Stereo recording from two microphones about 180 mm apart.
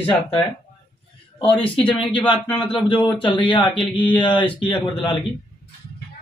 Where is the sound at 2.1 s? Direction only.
30° left (ahead or behind).